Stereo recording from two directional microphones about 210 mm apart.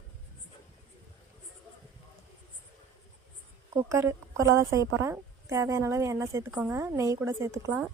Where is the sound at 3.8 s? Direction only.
15° right (ahead or behind).